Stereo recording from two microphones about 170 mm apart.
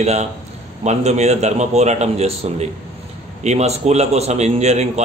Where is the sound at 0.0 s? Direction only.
40° right (ahead or behind).